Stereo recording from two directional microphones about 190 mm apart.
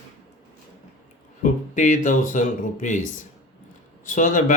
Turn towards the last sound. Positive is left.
turn(degrees=45)  # may be behind; listen again after turning